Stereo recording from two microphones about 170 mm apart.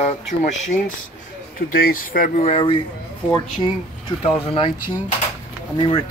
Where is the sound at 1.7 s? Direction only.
60° left (ahead or behind).